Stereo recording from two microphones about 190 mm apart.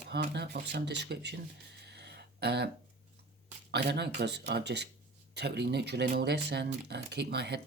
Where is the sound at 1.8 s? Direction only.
60° right (ahead or behind).